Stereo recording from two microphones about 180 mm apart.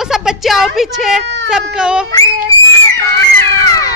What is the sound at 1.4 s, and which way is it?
Speech, 5° right (ahead or behind).